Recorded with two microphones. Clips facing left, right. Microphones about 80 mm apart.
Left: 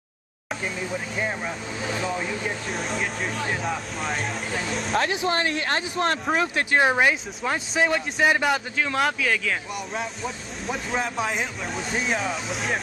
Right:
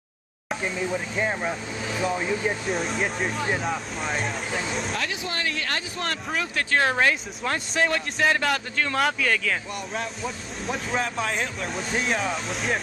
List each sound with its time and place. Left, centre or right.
0.5 s a man's voice: centre
2.7 s a man's voice: centre
4.9 s speech: left
6.7 s speech: centre
7.5 s a man's voice: centre